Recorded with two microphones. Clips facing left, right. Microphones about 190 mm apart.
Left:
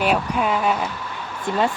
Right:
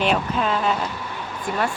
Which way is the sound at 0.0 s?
10° left (ahead or behind).